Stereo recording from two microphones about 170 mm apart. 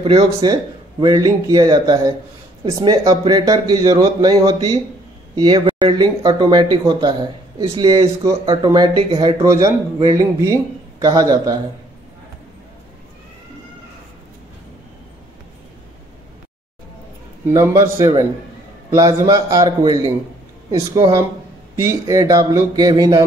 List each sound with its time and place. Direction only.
0.0 s a man's voice: 35° right (ahead or behind)
17.5 s a man's voice: 15° right (ahead or behind)